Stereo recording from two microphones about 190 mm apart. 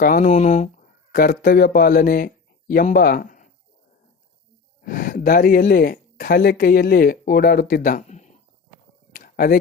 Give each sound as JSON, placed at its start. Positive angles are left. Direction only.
{"t": 0.0, "sound": "speech", "side_deg": 45}
{"t": 4.8, "sound": "speech", "side_deg": 45}
{"t": 9.1, "sound": "a sound", "side_deg": 50}